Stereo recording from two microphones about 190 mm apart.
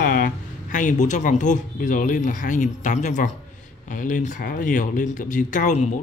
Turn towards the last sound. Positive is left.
turn(degrees=40)  # may be behind; listen again after turning